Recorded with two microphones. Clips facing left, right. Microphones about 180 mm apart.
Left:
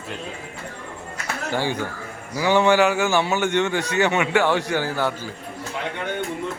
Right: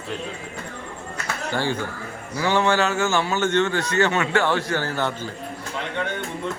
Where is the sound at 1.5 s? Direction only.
15° left (ahead or behind).